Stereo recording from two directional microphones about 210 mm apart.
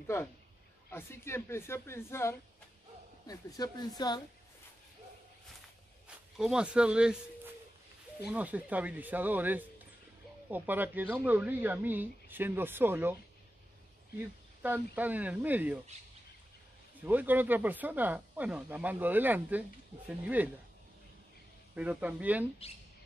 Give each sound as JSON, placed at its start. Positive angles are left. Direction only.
{"t": 0.0, "sound": "a man's voice", "side_deg": 10}
{"t": 6.0, "sound": "speech", "side_deg": -5}
{"t": 14.6, "sound": "speech", "side_deg": -10}
{"t": 17.0, "sound": "speech", "side_deg": -10}
{"t": 21.7, "sound": "speech", "side_deg": -5}